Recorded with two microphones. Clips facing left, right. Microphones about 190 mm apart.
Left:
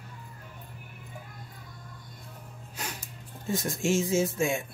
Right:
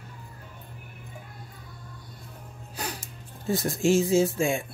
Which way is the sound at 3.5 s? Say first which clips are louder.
Right 5 dB; 35° right (ahead or behind).